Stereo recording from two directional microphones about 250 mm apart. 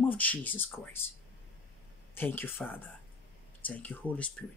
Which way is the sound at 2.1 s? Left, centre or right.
Centre.